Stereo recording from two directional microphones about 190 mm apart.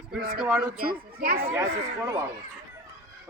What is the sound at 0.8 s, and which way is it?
Speech, 50° right (ahead or behind).